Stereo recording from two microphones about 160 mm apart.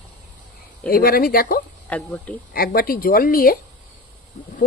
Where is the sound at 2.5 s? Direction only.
65° left (ahead or behind).